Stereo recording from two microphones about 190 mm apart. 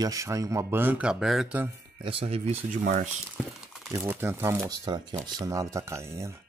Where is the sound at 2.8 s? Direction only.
40° right (ahead or behind).